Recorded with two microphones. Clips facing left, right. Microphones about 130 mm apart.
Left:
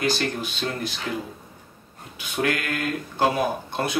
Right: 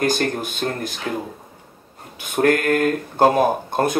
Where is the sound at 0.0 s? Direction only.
45° right (ahead or behind).